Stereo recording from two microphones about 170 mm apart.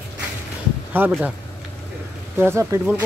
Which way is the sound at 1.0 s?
10° right (ahead or behind).